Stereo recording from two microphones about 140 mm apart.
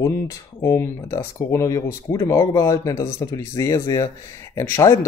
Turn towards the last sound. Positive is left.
turn(degrees=20)  # may be behind; listen again after turning